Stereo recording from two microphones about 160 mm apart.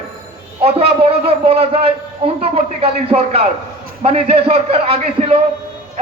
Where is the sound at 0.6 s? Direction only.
40° right (ahead or behind).